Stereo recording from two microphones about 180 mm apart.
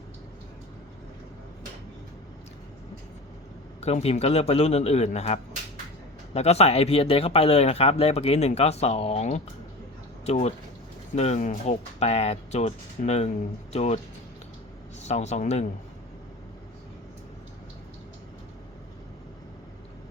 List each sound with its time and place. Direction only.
3.8 s speech: 35° left (ahead or behind)
15.0 s speech: 40° left (ahead or behind)